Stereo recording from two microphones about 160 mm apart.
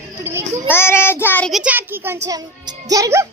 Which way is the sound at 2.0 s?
20° right (ahead or behind).